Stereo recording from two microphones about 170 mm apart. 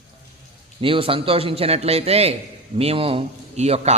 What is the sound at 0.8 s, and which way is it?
A man's voice, 30° right (ahead or behind).